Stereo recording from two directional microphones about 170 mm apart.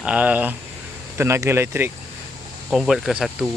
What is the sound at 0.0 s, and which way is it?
Speech, 10° right (ahead or behind).